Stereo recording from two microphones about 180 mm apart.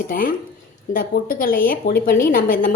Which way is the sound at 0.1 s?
50° left (ahead or behind).